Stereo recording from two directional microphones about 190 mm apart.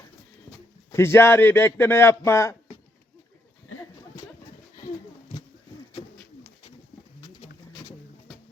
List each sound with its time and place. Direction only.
0.9 s speech: 15° left (ahead or behind)